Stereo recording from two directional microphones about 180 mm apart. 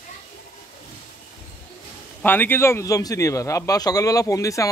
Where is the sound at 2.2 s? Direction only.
10° left (ahead or behind).